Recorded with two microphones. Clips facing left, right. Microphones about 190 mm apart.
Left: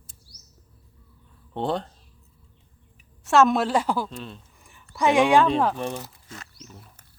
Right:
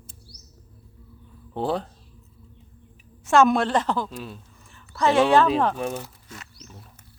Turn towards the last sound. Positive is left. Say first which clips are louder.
# even
turn(degrees=0)  # may be behind; listen again after turning